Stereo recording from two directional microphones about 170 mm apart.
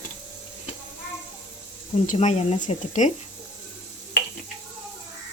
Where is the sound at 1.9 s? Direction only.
45° left (ahead or behind).